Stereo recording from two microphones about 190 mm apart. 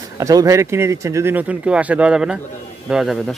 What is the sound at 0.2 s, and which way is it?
Speech, 15° right (ahead or behind).